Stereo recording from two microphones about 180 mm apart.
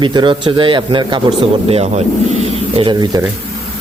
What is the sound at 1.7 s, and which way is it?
Speech, 35° right (ahead or behind).